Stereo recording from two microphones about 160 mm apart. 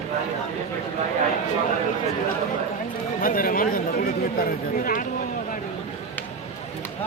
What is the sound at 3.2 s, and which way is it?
Speech, 60° left (ahead or behind).